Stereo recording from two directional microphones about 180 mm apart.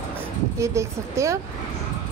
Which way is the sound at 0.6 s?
15° right (ahead or behind).